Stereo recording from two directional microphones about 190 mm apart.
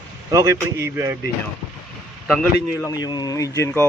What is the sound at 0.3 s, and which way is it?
Speech, 15° right (ahead or behind).